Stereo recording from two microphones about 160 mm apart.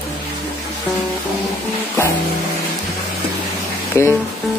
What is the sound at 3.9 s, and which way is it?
Music, 20° left (ahead or behind).